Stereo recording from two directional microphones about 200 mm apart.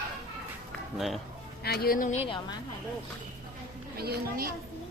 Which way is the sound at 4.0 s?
50° right (ahead or behind).